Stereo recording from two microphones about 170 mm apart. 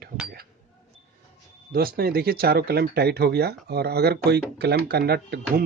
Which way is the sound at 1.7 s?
60° right (ahead or behind).